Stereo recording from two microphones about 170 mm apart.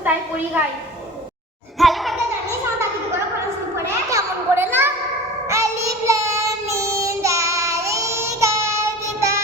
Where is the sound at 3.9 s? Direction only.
15° right (ahead or behind).